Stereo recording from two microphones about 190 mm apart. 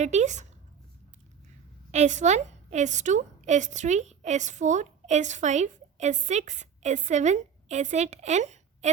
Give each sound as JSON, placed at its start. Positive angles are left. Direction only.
{"t": 0.0, "sound": "speech", "side_deg": -35}
{"t": 1.9, "sound": "a woman's voice", "side_deg": -40}